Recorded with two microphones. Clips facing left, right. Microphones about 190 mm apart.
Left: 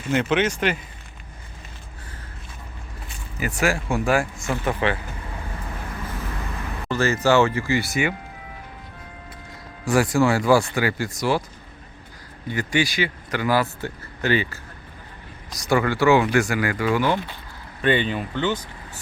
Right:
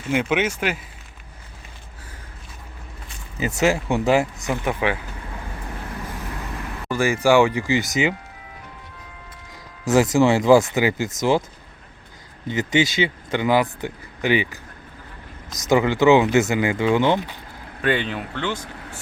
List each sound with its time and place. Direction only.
0.1 s speech: 10° right (ahead or behind)
3.4 s speech: 20° right (ahead or behind)
6.9 s speech: 10° right (ahead or behind)
9.8 s speech: 20° right (ahead or behind)
12.5 s speech: 20° right (ahead or behind)
17.8 s speech: centre (ahead or behind)